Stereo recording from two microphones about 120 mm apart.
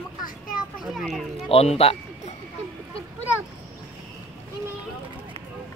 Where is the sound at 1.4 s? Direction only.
55° left (ahead or behind).